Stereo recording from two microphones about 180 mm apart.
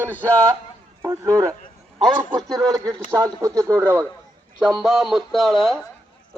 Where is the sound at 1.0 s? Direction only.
15° right (ahead or behind).